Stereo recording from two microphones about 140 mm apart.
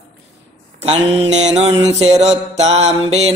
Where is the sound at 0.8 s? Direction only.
45° right (ahead or behind).